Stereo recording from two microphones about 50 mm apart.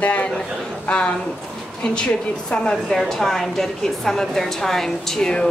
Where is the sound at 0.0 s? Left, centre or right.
Left.